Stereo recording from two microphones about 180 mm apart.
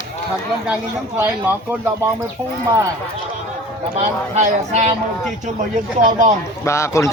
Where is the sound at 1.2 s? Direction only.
15° right (ahead or behind).